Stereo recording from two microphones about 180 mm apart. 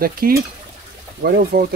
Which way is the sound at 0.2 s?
50° right (ahead or behind).